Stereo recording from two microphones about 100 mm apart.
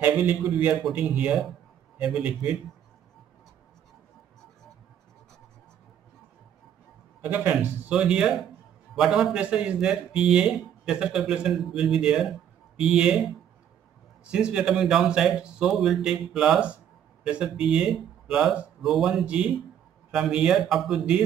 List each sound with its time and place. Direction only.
0.0 s a man's voice: 15° right (ahead or behind)
7.2 s a man's voice: 15° right (ahead or behind)
7.9 s a man's voice: 10° right (ahead or behind)
14.3 s a man's voice: 10° right (ahead or behind)